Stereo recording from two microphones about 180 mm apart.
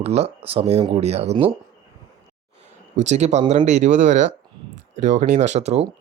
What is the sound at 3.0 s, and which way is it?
Speech, 40° right (ahead or behind).